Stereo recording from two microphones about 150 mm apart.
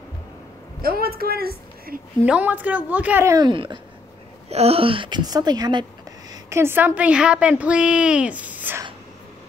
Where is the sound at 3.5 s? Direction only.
35° right (ahead or behind); by 8.8 s 10° right (ahead or behind).